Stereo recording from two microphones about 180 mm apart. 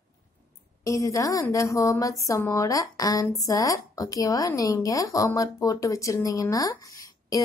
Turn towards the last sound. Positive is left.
turn(degrees=20)  # may be behind; listen again after turning